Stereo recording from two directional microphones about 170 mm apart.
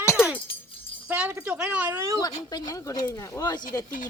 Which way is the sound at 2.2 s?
20° left (ahead or behind).